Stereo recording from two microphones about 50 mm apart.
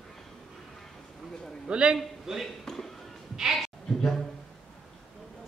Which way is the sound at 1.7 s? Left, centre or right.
Centre.